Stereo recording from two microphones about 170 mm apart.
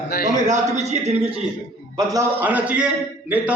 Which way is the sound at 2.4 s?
10° right (ahead or behind).